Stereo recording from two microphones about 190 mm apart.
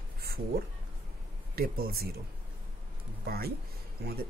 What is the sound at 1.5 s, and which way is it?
Speech, 55° right (ahead or behind).